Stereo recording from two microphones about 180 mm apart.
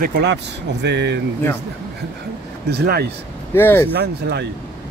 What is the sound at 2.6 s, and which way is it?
Speech, 60° right (ahead or behind).